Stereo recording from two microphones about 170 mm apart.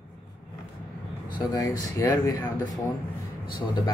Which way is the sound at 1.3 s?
20° left (ahead or behind).